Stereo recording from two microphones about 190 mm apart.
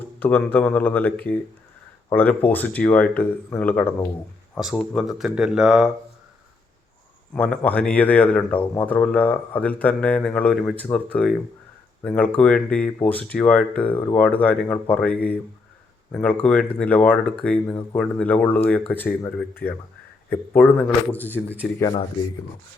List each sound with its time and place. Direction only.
0.2 s speech: 10° left (ahead or behind)
7.3 s speech: 5° left (ahead or behind)